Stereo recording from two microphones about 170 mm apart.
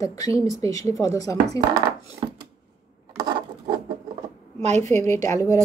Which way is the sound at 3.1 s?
25° right (ahead or behind).